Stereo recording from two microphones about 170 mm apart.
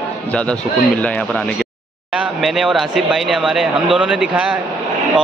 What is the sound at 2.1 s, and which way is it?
A man's voice, centre (ahead or behind).